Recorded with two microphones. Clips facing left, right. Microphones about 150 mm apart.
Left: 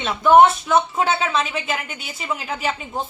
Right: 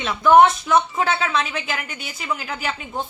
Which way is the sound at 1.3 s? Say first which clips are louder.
Left 1 dB; centre (ahead or behind).